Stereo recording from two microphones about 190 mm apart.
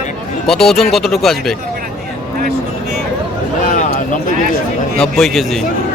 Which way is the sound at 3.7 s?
45° left (ahead or behind).